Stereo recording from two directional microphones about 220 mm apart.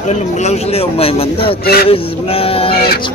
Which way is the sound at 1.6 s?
45° left (ahead or behind).